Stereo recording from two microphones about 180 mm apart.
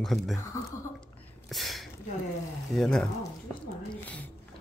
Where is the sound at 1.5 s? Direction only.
Centre (ahead or behind).